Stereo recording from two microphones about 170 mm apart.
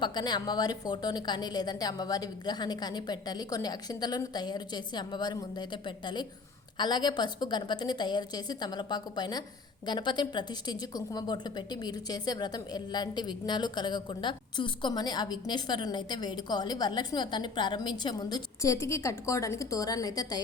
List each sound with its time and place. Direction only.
0.0 s a woman's voice: 25° left (ahead or behind)
6.7 s a woman's voice: 25° left (ahead or behind)